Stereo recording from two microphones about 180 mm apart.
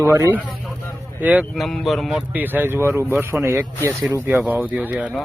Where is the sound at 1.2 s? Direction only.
5° right (ahead or behind).